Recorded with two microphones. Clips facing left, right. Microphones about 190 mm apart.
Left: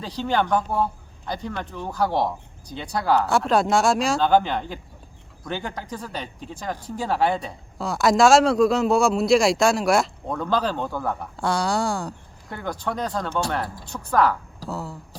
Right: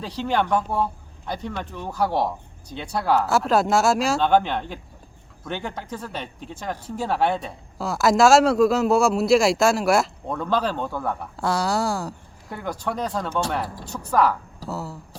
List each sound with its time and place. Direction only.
0.2 s a woman's voice: centre (ahead or behind)